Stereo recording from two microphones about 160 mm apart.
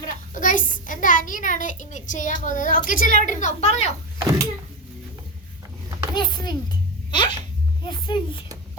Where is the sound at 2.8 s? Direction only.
55° left (ahead or behind).